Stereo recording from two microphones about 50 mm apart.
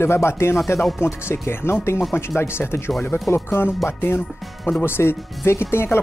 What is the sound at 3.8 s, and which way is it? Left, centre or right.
Speech, left.